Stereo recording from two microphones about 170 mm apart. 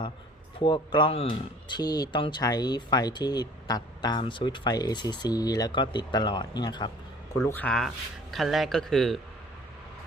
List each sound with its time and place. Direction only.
0.6 s speech: 25° left (ahead or behind)
7.4 s speech: 10° left (ahead or behind)